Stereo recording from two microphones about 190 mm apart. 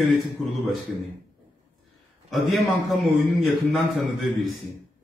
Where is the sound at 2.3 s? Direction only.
Centre (ahead or behind).